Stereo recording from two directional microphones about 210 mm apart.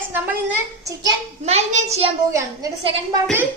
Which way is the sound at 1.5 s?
30° right (ahead or behind).